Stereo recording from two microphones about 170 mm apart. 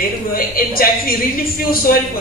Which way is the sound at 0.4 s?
60° left (ahead or behind).